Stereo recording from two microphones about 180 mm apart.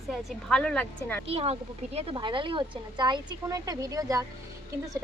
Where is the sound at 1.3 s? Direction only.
35° right (ahead or behind); by 4.2 s 20° right (ahead or behind).